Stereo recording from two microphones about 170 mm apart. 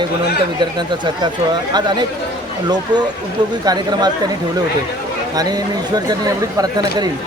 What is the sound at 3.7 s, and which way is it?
Speech, 25° right (ahead or behind).